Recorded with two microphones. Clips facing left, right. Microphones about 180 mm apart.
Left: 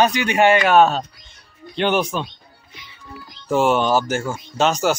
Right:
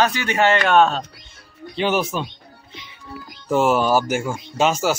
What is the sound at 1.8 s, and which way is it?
Speech, 5° right (ahead or behind).